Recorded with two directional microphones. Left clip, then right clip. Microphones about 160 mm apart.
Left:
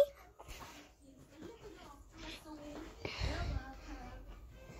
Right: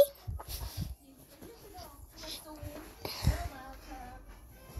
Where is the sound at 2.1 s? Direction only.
5° left (ahead or behind).